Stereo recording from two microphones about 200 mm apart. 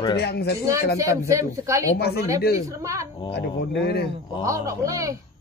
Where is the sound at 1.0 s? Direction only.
15° right (ahead or behind).